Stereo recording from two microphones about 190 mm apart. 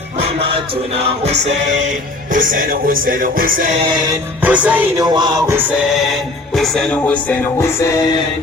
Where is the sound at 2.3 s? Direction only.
45° right (ahead or behind).